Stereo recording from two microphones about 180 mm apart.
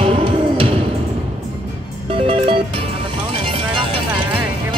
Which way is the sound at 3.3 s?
30° right (ahead or behind).